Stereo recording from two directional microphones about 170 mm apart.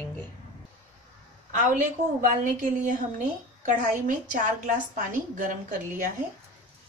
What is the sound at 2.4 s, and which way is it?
Speech, 50° right (ahead or behind).